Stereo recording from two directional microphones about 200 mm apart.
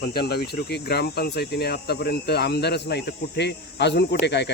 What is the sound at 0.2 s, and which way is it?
Speech, 55° left (ahead or behind).